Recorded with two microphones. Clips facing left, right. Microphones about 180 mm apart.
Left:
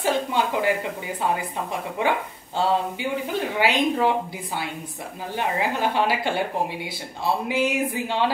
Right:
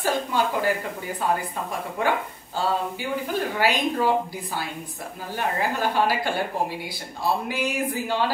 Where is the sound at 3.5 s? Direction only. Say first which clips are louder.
Left 3 dB; 25° left (ahead or behind).